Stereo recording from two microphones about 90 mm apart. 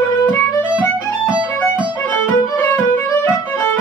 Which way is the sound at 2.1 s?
20° left (ahead or behind).